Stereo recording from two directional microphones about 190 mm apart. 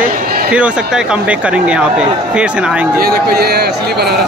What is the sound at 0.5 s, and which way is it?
Speech, 5° right (ahead or behind).